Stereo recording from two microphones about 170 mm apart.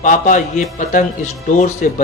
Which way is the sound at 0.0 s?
50° left (ahead or behind).